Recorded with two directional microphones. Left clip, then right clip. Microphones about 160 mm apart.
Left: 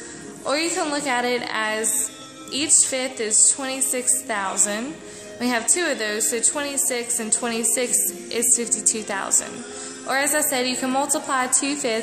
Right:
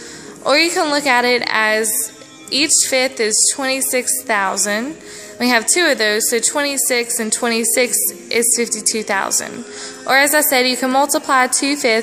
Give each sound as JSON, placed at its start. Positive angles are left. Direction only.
{"t": 0.4, "sound": "a woman's voice", "side_deg": -40}